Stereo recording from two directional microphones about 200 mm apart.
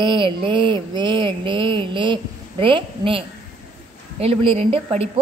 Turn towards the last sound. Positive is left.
turn(degrees=-30)  # may be behind; listen again after turning